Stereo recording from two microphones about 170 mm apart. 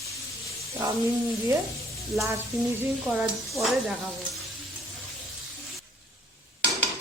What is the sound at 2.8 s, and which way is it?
Speech, 15° right (ahead or behind).